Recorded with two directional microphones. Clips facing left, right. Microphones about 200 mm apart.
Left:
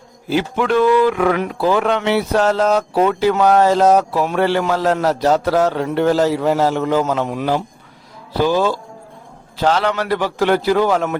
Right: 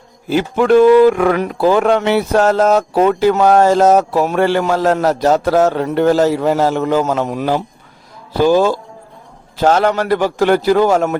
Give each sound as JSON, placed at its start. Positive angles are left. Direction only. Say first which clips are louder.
{"t": 0.3, "sound": "speech", "louder": "right 5 dB", "side_deg": -45}